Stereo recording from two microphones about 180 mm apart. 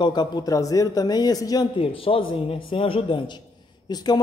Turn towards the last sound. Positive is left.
turn(degrees=25)  # may be behind; listen again after turning